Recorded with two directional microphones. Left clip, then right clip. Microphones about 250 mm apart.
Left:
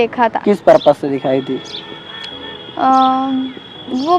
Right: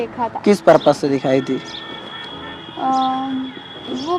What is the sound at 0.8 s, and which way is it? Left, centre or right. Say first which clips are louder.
Speech: left 3 dB; centre.